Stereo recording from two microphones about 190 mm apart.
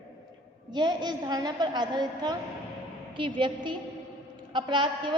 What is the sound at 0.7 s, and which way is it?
A woman's voice, 25° right (ahead or behind).